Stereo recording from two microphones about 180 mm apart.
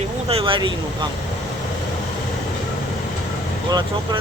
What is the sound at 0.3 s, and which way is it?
Speech, 30° right (ahead or behind).